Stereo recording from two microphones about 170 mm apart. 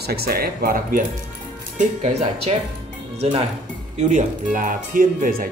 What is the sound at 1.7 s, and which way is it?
Speech, 35° right (ahead or behind).